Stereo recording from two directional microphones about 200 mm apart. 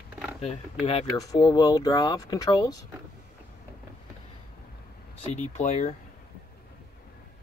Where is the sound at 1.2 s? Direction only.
20° left (ahead or behind).